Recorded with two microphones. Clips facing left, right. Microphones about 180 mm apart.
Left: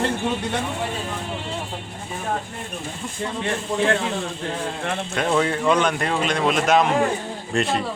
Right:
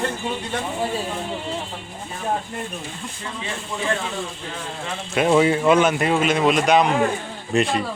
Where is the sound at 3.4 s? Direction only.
65° left (ahead or behind).